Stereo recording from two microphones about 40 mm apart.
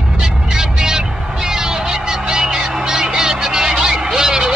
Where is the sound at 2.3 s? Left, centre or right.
Centre.